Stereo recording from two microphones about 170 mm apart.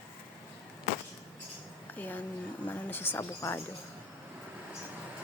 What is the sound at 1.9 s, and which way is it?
Speech, 10° left (ahead or behind).